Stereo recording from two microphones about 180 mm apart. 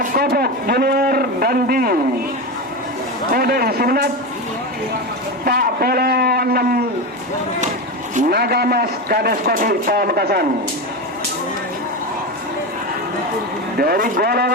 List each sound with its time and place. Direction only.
0.0 s a man's voice: 55° right (ahead or behind)
3.3 s a man's voice: 55° right (ahead or behind)
5.5 s speech: 55° right (ahead or behind)
8.3 s a man's voice: 60° right (ahead or behind)
13.7 s a man's voice: 55° right (ahead or behind)